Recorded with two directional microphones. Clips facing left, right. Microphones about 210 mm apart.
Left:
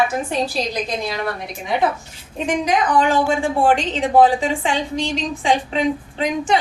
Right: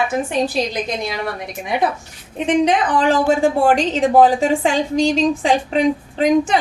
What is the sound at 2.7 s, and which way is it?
A woman's voice, 35° right (ahead or behind).